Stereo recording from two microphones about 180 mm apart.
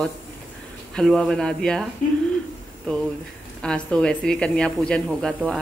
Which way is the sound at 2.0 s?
45° left (ahead or behind).